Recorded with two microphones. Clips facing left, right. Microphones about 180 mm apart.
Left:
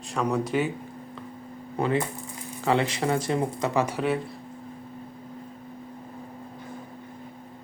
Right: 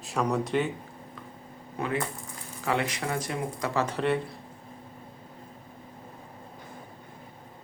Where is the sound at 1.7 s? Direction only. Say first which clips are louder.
Left 5 dB; 30° left (ahead or behind).